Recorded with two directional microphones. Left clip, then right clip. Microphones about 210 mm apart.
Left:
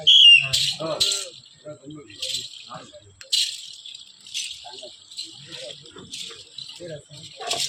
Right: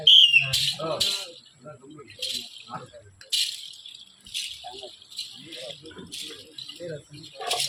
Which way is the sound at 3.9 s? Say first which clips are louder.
Left 3 dB; 10° left (ahead or behind).